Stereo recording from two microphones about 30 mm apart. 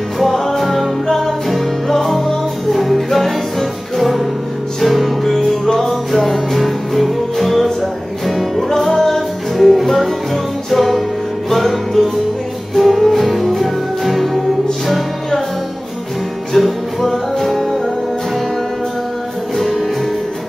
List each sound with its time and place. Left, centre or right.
0.2 s music: centre
9.6 s music: centre
16.5 s music: centre